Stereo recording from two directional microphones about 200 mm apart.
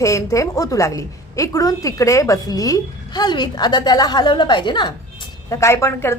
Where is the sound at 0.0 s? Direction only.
15° left (ahead or behind).